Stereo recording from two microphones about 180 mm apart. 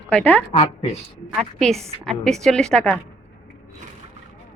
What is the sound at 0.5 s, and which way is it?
Speech, 35° left (ahead or behind).